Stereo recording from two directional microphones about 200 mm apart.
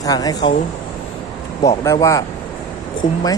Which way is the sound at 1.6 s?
15° left (ahead or behind).